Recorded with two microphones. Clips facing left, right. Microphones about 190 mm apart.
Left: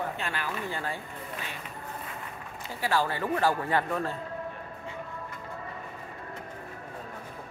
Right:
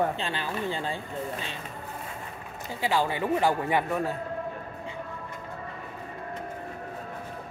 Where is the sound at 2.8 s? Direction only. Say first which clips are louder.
Right 2 dB; 15° right (ahead or behind).